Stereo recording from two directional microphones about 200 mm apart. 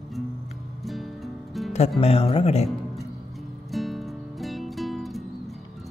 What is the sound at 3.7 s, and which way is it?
Music, centre (ahead or behind).